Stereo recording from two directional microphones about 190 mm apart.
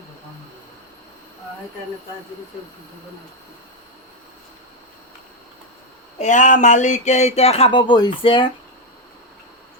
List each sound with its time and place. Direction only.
6.1 s speech: 40° left (ahead or behind)